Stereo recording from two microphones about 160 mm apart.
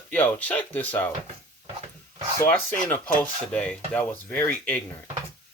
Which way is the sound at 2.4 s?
10° left (ahead or behind).